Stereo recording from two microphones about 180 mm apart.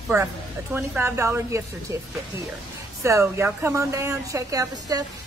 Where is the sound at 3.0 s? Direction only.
15° right (ahead or behind).